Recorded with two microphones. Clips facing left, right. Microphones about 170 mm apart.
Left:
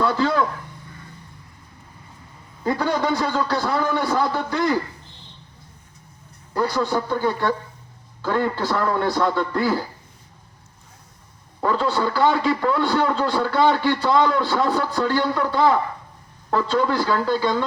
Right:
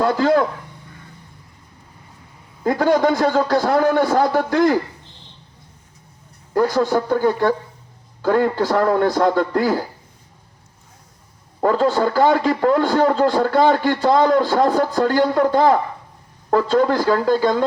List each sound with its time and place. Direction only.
0.0 s a man's voice: 45° right (ahead or behind)
2.6 s a man's voice: 45° right (ahead or behind)
6.5 s a man's voice: 50° right (ahead or behind)
11.6 s a man's voice: 45° right (ahead or behind)